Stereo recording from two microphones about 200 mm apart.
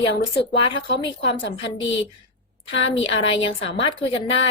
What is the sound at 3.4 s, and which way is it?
Speech, 25° left (ahead or behind).